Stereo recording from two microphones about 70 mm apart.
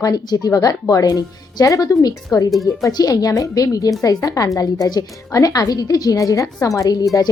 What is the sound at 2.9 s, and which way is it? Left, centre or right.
A woman's voice, left.